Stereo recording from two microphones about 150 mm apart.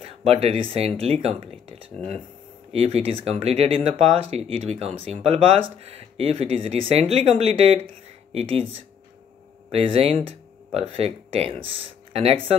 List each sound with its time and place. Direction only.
0.0 s speech: 40° right (ahead or behind)
9.7 s speech: 40° right (ahead or behind)